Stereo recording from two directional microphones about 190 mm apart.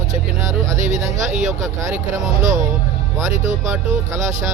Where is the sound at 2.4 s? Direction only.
40° right (ahead or behind).